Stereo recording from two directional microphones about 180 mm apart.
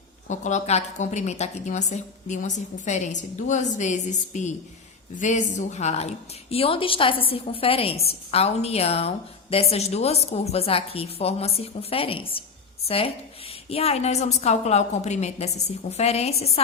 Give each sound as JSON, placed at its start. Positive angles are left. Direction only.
{"t": 0.3, "sound": "a woman's voice", "side_deg": 40}